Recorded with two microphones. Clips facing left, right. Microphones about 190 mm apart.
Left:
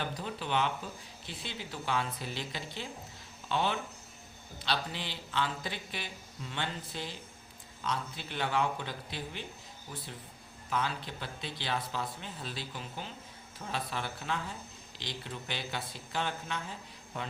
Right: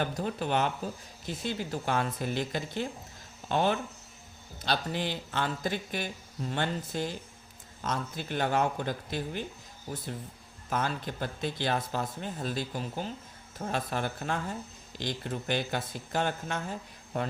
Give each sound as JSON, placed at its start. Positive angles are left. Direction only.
{"t": 0.0, "sound": "speech", "side_deg": -45}
{"t": 10.7, "sound": "speech", "side_deg": -45}